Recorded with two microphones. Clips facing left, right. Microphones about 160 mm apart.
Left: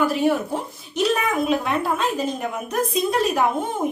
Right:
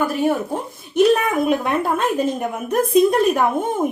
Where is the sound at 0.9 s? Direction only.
55° right (ahead or behind).